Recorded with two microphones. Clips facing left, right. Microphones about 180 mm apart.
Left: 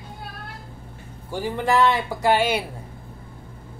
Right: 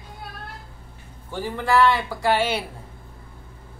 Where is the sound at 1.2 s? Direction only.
15° left (ahead or behind).